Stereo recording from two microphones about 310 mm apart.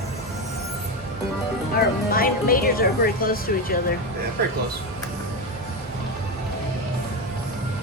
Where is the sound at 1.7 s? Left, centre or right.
Left.